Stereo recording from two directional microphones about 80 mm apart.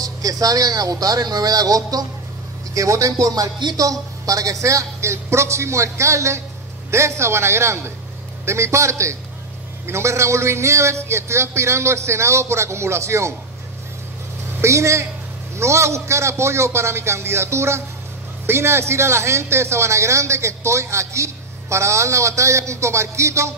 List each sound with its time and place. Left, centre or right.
0.0 s speech: right
14.6 s speech: right